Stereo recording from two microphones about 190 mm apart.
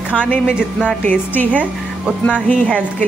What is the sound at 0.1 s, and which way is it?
A woman's voice, 5° left (ahead or behind).